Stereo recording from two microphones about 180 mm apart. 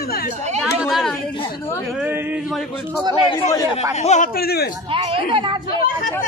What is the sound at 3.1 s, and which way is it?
Speech, 30° left (ahead or behind).